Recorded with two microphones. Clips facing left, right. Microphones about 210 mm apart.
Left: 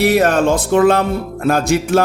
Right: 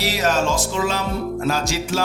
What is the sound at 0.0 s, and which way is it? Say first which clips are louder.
Speech: left 8 dB; 55° left (ahead or behind).